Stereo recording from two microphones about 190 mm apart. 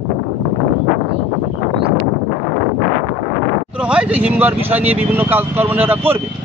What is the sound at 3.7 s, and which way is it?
Speech, 5° right (ahead or behind).